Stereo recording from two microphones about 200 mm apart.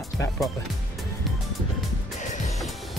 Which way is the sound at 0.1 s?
Centre (ahead or behind).